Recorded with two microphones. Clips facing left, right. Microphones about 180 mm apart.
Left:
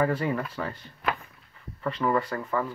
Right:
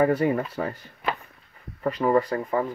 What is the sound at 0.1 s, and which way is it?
Speech, 40° right (ahead or behind).